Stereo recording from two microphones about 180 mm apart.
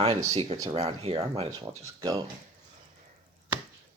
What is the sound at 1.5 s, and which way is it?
Speech, 20° right (ahead or behind).